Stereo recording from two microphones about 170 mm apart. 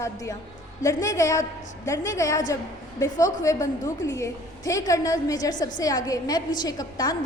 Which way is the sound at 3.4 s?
20° left (ahead or behind).